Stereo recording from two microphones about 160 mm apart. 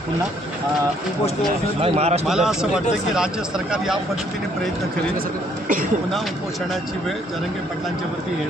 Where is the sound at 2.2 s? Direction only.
5° right (ahead or behind).